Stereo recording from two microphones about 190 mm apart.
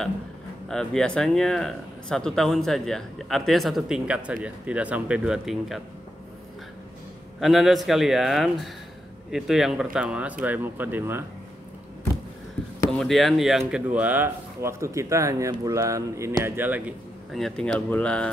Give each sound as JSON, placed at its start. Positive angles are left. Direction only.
{"t": 0.7, "sound": "speech", "side_deg": 5}
{"t": 7.3, "sound": "speech", "side_deg": 0}
{"t": 12.9, "sound": "speech", "side_deg": 0}